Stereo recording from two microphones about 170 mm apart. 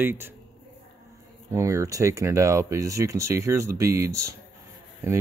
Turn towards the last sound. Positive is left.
turn(degrees=-15)  # may be behind; listen again after turning